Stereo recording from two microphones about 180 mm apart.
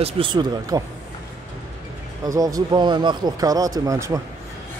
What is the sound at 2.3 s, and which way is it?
A man's voice, 20° right (ahead or behind).